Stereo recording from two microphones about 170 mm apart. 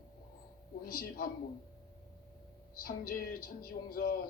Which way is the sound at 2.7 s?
60° left (ahead or behind).